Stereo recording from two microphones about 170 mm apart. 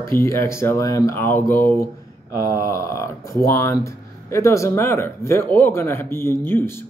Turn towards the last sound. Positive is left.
turn(degrees=10)  # may be behind; listen again after turning